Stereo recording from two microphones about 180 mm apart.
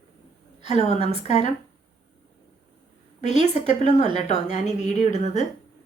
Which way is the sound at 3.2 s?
40° left (ahead or behind).